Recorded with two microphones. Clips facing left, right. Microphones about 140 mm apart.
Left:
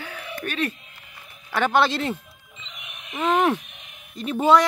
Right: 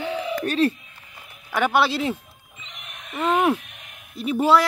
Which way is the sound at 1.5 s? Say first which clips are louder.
Even; 10° right (ahead or behind).